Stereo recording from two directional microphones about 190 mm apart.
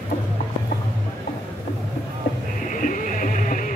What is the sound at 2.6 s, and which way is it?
Music, 45° left (ahead or behind).